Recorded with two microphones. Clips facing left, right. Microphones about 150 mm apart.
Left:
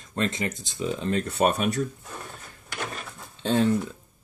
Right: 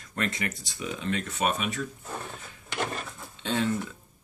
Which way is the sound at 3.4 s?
40° left (ahead or behind).